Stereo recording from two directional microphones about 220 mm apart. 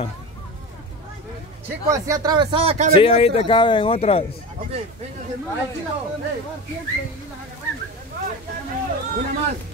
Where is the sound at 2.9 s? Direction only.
25° left (ahead or behind).